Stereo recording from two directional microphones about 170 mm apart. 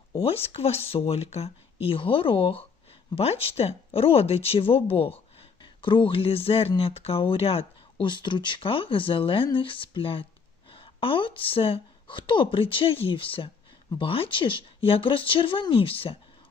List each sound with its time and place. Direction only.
0.1 s speech: 35° left (ahead or behind)